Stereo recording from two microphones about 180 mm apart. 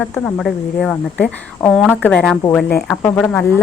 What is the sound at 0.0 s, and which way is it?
A woman's voice, 10° left (ahead or behind).